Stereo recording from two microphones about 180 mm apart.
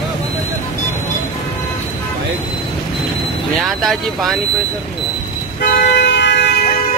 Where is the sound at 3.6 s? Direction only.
Centre (ahead or behind).